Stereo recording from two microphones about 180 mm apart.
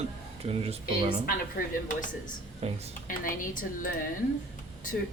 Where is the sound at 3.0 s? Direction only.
50° left (ahead or behind).